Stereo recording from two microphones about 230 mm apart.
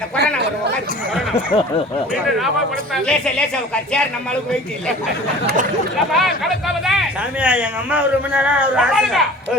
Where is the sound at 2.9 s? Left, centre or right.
Centre.